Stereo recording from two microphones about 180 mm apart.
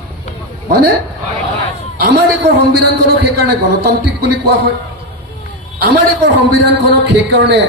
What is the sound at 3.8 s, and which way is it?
Speech, 65° right (ahead or behind).